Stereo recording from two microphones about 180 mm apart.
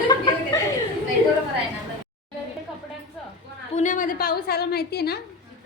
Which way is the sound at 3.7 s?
45° left (ahead or behind).